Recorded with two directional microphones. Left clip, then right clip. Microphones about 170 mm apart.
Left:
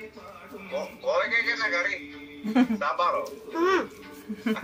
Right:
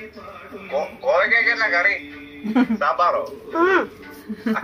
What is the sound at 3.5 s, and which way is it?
Speech, 25° left (ahead or behind).